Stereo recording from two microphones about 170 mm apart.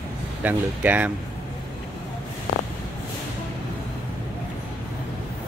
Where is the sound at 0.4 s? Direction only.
10° right (ahead or behind).